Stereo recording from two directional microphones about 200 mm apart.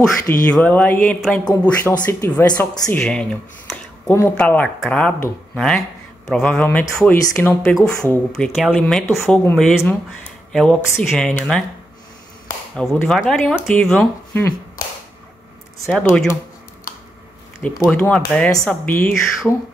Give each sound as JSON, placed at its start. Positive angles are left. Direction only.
{"t": 0.3, "sound": "speech", "side_deg": 5}
{"t": 1.4, "sound": "speech", "side_deg": 15}
{"t": 3.0, "sound": "speech", "side_deg": 5}
{"t": 15.9, "sound": "speech", "side_deg": 5}
{"t": 17.8, "sound": "speech", "side_deg": 5}